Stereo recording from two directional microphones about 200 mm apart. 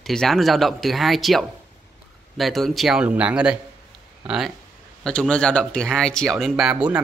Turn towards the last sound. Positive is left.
turn(degrees=-5)  # may be behind; listen again after turning